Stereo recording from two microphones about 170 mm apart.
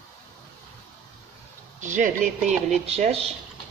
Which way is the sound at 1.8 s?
50° right (ahead or behind).